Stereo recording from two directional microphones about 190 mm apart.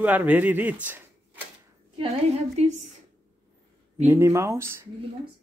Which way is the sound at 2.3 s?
35° right (ahead or behind).